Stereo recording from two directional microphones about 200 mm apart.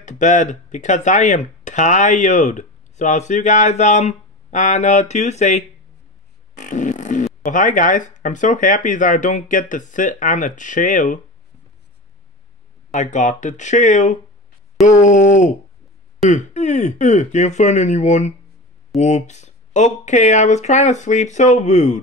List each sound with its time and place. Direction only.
0.0 s speech: 35° left (ahead or behind)
12.9 s speech: 40° left (ahead or behind)